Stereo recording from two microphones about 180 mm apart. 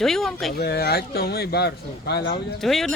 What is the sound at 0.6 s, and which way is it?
Speech, 60° left (ahead or behind).